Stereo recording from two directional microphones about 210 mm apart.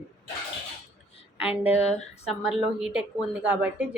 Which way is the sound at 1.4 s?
25° left (ahead or behind).